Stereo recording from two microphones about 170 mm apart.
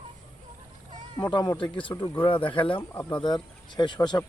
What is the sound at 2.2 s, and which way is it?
Speech, 30° left (ahead or behind).